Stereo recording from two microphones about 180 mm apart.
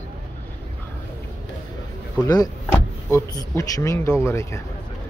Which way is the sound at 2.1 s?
20° left (ahead or behind).